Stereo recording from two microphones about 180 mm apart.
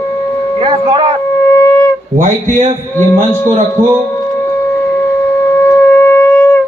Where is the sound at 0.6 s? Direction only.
30° right (ahead or behind).